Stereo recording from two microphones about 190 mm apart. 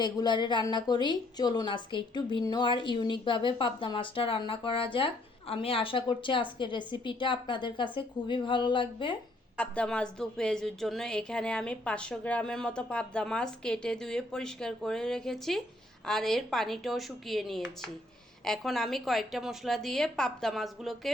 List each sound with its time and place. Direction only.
0.0 s a woman's voice: 25° left (ahead or behind)
9.6 s a woman's voice: 5° left (ahead or behind)